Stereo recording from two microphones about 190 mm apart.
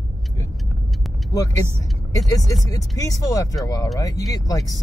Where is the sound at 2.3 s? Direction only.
20° left (ahead or behind).